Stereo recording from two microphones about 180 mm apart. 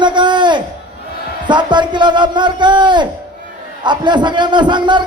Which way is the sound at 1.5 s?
25° right (ahead or behind).